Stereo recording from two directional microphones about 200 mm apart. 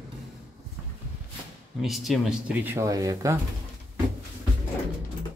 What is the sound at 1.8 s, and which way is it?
A man's voice, centre (ahead or behind).